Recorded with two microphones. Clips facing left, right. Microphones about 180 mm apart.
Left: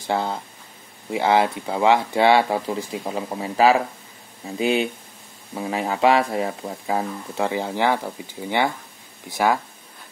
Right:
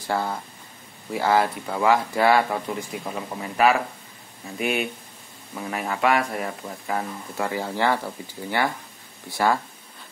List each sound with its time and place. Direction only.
0.0 s speech: 20° left (ahead or behind)